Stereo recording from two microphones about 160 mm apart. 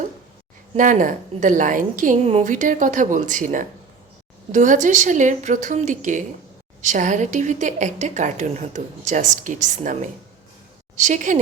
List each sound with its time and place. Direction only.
0.8 s a woman's voice: 55° right (ahead or behind)